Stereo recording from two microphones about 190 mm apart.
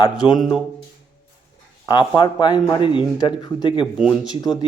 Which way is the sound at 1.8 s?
20° left (ahead or behind).